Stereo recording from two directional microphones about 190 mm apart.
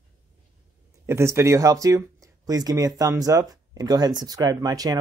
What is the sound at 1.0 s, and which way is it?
Speech, 15° right (ahead or behind).